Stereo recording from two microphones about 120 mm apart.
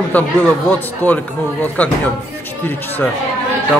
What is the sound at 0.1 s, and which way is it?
Speech, 15° left (ahead or behind).